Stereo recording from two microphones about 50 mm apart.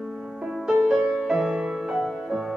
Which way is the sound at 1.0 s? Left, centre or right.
Centre.